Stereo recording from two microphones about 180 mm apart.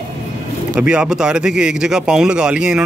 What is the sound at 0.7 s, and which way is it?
Speech, 5° right (ahead or behind).